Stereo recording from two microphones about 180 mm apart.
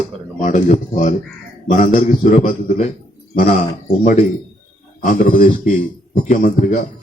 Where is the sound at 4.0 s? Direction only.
40° left (ahead or behind).